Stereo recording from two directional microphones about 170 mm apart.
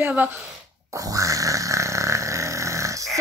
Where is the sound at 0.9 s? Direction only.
20° right (ahead or behind).